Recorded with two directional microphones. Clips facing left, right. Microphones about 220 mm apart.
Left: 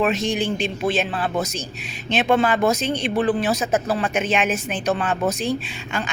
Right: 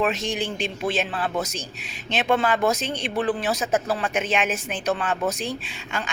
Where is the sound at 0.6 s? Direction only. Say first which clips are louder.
Left 3 dB; 50° left (ahead or behind).